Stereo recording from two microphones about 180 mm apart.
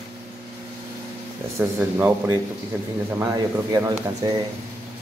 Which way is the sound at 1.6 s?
10° right (ahead or behind).